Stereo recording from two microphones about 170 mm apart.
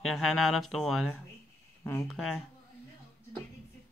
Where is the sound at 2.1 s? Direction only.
Centre (ahead or behind).